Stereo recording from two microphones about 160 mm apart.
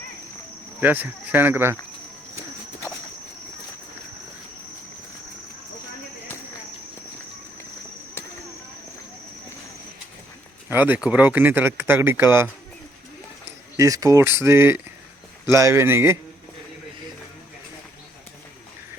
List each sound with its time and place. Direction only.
0.8 s speech: 10° right (ahead or behind)
10.7 s speech: 10° right (ahead or behind)
13.7 s speech: 20° right (ahead or behind)